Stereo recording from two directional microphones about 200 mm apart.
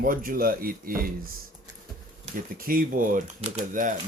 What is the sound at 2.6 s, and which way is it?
Speech, 45° right (ahead or behind).